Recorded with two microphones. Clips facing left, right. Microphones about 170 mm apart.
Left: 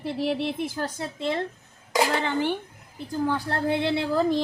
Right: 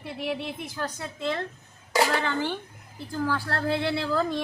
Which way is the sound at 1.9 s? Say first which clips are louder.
Left 1 dB; 15° left (ahead or behind).